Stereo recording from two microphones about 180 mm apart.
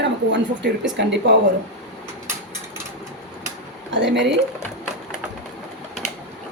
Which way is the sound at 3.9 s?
80° right.